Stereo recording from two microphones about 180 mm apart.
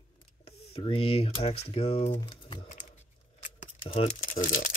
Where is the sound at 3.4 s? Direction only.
45° left (ahead or behind).